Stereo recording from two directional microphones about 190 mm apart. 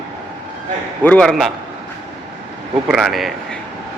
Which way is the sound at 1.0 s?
5° left (ahead or behind).